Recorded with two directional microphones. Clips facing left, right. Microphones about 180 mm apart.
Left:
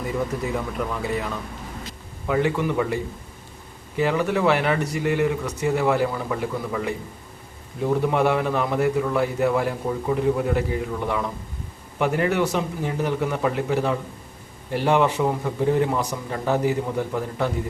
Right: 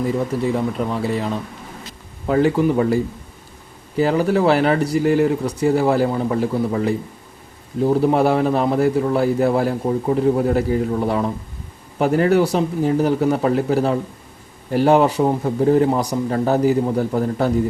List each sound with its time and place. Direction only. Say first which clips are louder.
0.5 s speech: right 6 dB; 30° right (ahead or behind)